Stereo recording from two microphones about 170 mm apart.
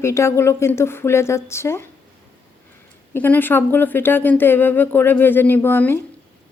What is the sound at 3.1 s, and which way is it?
Speech, 10° left (ahead or behind).